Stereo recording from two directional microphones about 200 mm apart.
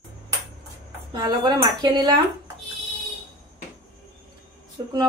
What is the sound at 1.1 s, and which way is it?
Speech, 20° right (ahead or behind).